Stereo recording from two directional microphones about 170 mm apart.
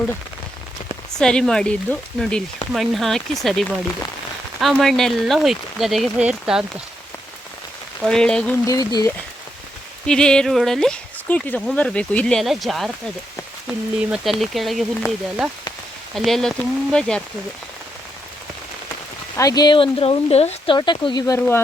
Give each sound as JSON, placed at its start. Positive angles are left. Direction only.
{"t": 1.2, "sound": "speech", "side_deg": 5}
{"t": 8.0, "sound": "speech", "side_deg": 5}
{"t": 8.6, "sound": "speech", "side_deg": 20}
{"t": 10.1, "sound": "speech", "side_deg": 5}
{"t": 19.4, "sound": "speech", "side_deg": 20}
{"t": 20.7, "sound": "speech", "side_deg": 25}